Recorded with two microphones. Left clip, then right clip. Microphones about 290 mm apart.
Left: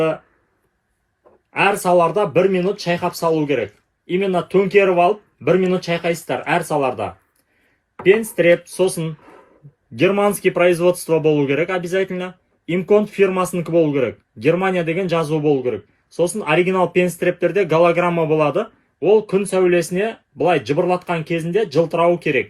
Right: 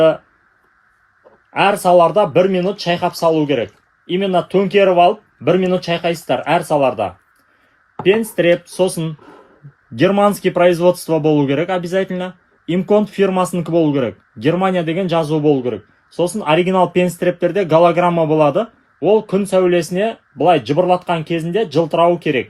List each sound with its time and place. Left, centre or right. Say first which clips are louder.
1.5 s speech: right 4 dB; right